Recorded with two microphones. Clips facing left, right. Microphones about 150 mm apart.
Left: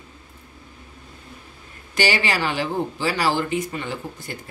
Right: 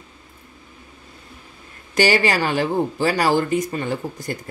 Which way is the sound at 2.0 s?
45° right (ahead or behind).